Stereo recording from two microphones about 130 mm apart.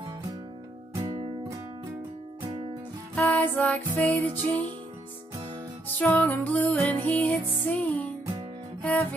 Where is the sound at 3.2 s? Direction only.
15° left (ahead or behind).